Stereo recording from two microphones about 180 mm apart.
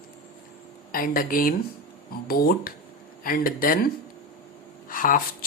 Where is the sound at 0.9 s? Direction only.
50° left (ahead or behind).